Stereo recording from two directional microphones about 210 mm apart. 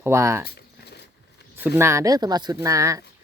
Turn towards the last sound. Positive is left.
turn(degrees=-15)  # may be behind; listen again after turning